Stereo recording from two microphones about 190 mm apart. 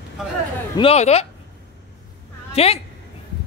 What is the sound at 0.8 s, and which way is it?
Speech, 35° left (ahead or behind).